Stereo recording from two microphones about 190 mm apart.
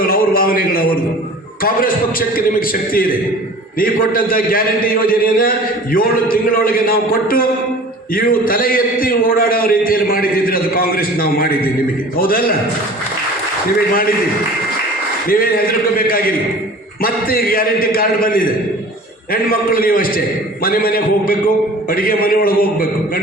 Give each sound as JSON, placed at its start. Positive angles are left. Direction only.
{"t": 0.0, "sound": "a sound", "side_deg": 50}
{"t": 1.6, "sound": "a man's voice", "side_deg": 50}
{"t": 15.3, "sound": "a man's voice", "side_deg": 50}